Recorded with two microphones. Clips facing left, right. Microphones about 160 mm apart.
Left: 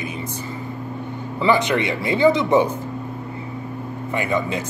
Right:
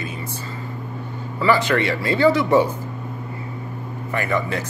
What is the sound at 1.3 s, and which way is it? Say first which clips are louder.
Speech: even; 20° left (ahead or behind).